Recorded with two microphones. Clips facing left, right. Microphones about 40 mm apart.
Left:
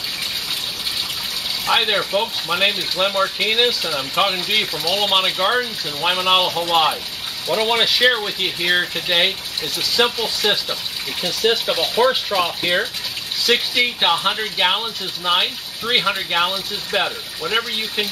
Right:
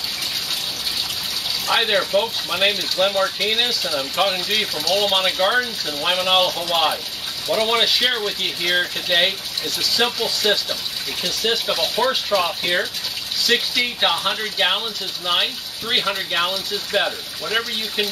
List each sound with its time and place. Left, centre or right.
1.7 s speech: centre